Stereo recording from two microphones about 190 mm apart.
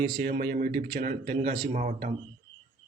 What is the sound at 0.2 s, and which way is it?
A man's voice, 55° right (ahead or behind).